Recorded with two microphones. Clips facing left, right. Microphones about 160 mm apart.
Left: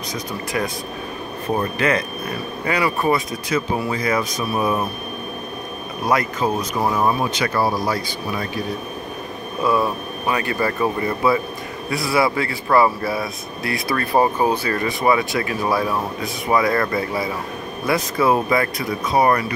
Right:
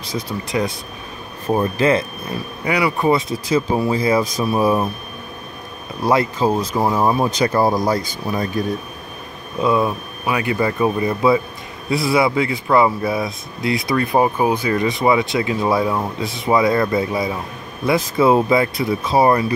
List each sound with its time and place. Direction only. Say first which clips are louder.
0.1 s speech: right 4 dB; 25° right (ahead or behind)
1.8 s speech: right 4 dB; 30° right (ahead or behind)
2.6 s speech: right 2 dB; 15° right (ahead or behind)
3.1 s speech: right 3 dB; 25° right (ahead or behind)
6.0 s speech: right 3 dB; 30° right (ahead or behind)
6.8 s speech: right 1 dB; 15° right (ahead or behind)
7.2 s speech: right 4 dB; 40° right (ahead or behind)
7.5 s speech: right 3 dB; 20° right (ahead or behind)
7.9 s speech: right 3 dB; 40° right (ahead or behind)
9.6 s speech: right 2 dB; 20° right (ahead or behind)